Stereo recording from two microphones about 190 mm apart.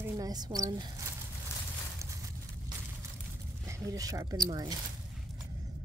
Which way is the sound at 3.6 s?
20° right (ahead or behind).